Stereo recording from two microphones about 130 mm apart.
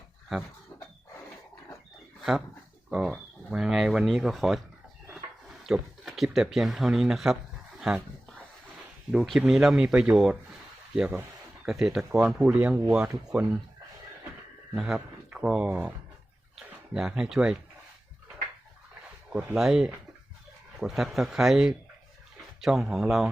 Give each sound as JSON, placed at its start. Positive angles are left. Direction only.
{"t": 2.9, "sound": "speech", "side_deg": -5}
{"t": 5.6, "sound": "speech", "side_deg": 0}
{"t": 7.8, "sound": "dog", "side_deg": -5}
{"t": 9.1, "sound": "speech", "side_deg": 0}
{"t": 14.8, "sound": "speech", "side_deg": -5}
{"t": 16.9, "sound": "speech", "side_deg": -5}
{"t": 19.3, "sound": "speech", "side_deg": -10}